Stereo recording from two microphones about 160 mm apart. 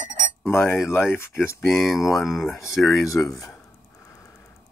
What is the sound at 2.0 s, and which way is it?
Speech, 20° left (ahead or behind).